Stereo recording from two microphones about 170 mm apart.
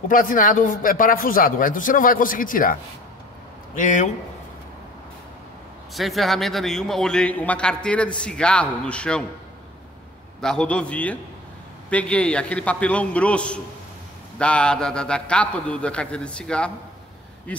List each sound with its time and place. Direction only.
0.1 s a man's voice: 55° left (ahead or behind)
5.9 s a man's voice: centre (ahead or behind)
10.4 s a man's voice: 5° left (ahead or behind)